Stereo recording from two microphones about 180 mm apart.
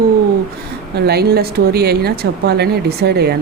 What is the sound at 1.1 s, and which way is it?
A woman's voice, 60° right (ahead or behind).